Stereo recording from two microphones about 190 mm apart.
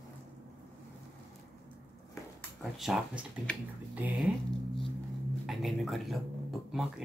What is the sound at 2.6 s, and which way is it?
A woman's voice, centre (ahead or behind).